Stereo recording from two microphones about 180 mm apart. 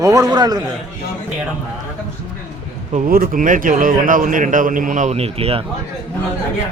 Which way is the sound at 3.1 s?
55° right (ahead or behind).